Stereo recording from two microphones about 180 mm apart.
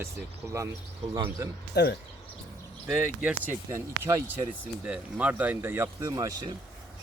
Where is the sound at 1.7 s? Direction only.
65° left (ahead or behind).